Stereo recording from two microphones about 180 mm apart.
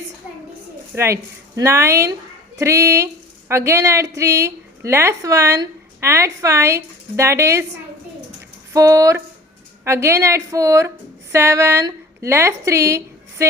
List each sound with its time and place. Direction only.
0.9 s a woman's voice: 15° right (ahead or behind)
8.7 s a woman's voice: 20° right (ahead or behind)